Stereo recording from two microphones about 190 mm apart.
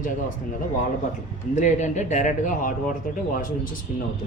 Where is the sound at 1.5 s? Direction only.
40° left (ahead or behind).